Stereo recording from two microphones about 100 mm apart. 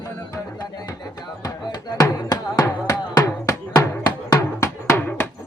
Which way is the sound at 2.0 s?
40° left (ahead or behind).